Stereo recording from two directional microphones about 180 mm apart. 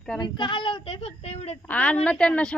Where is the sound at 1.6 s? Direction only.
10° left (ahead or behind).